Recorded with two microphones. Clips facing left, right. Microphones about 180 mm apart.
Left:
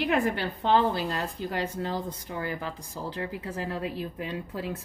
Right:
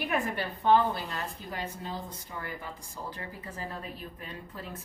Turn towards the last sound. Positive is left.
turn(degrees=85)